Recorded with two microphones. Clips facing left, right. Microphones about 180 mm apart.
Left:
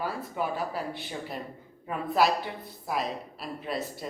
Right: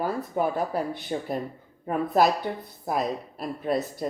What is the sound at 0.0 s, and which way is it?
Speech, 45° right (ahead or behind).